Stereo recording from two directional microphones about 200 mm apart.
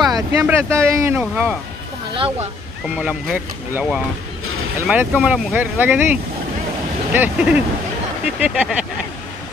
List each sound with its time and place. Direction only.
0.1 s speech: 15° right (ahead or behind)
2.1 s speech: 25° right (ahead or behind)
2.8 s speech: 5° right (ahead or behind)
7.1 s speech: 5° right (ahead or behind)